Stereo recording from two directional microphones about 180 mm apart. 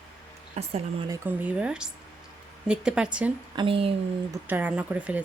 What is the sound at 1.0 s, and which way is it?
Speech, 20° right (ahead or behind).